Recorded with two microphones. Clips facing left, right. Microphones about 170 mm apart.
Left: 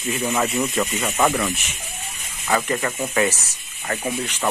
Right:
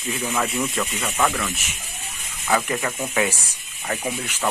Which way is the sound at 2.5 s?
5° right (ahead or behind).